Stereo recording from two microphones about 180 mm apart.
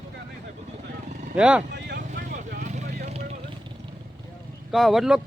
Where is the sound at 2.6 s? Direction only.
40° right (ahead or behind).